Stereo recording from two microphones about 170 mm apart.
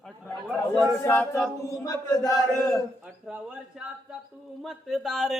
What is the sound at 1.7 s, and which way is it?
Speech, 20° left (ahead or behind).